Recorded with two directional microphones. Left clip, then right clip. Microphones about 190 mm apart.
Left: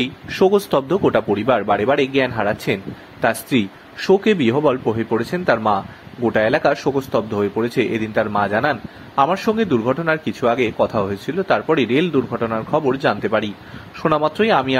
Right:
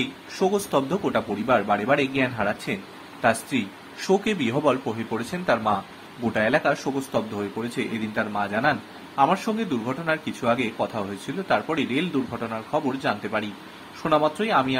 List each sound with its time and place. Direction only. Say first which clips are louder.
0.3 s a man's voice: left 8 dB; 35° left (ahead or behind)